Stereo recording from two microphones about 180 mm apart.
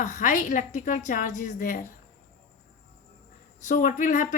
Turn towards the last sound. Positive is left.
turn(degrees=45)  # may be behind; listen again after turning